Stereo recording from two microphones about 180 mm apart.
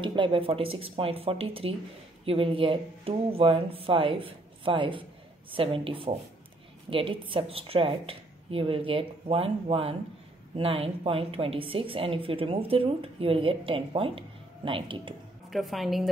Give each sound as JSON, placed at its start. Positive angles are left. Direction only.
{"t": 0.0, "sound": "a woman's voice", "side_deg": -25}
{"t": 15.5, "sound": "a woman's voice", "side_deg": 0}